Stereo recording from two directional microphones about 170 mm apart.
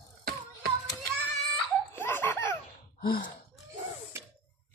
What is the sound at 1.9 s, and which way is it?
Laughter, 10° left (ahead or behind).